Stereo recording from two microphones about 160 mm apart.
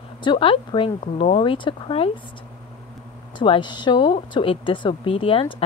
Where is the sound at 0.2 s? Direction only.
30° left (ahead or behind).